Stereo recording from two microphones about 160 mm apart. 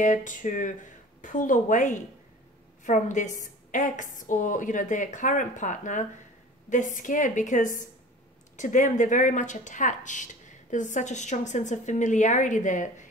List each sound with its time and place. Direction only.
0.0 s speech: 50° left (ahead or behind)